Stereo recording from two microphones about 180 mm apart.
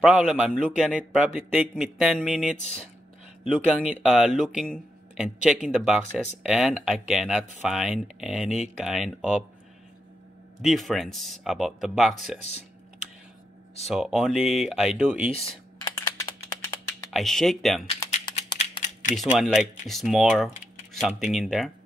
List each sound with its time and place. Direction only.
0.0 s speech: 5° right (ahead or behind)
3.5 s speech: 5° right (ahead or behind)
10.6 s speech: centre (ahead or behind)
13.8 s speech: centre (ahead or behind)
15.3 s computer keyboard: 35° left (ahead or behind)
15.9 s computer keyboard: 20° left (ahead or behind)
17.1 s speech: centre (ahead or behind)
17.8 s typing: 40° left (ahead or behind)
19.1 s speech: centre (ahead or behind)